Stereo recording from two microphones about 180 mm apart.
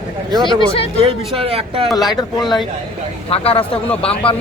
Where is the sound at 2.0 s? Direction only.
20° left (ahead or behind).